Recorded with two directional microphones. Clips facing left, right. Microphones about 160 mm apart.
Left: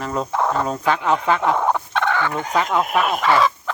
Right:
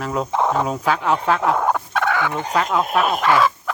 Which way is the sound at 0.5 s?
10° right (ahead or behind).